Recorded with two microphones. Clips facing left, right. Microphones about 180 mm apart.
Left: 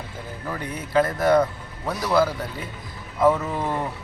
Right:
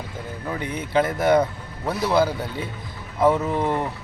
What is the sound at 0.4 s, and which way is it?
Speech, 20° right (ahead or behind).